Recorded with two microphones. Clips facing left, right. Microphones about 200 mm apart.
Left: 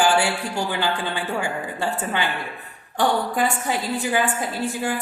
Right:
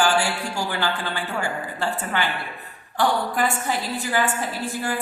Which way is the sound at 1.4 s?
15° left (ahead or behind).